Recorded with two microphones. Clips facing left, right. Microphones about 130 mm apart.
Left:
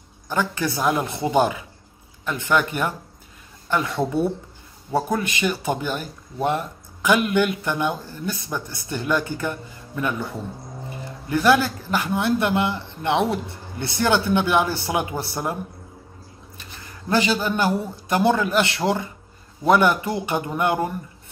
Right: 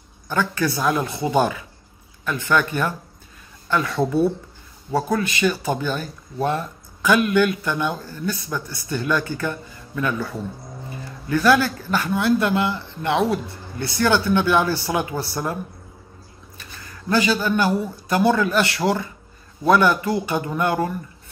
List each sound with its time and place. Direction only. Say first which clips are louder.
0.3 s a man's voice: right 2 dB; 20° left (ahead or behind)
16.5 s a sound: right 1 dB; 20° left (ahead or behind)
18.0 s a man's voice: right 1 dB; 20° left (ahead or behind)